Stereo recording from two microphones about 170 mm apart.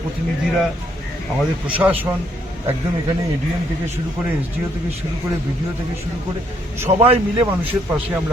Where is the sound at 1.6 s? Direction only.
10° right (ahead or behind).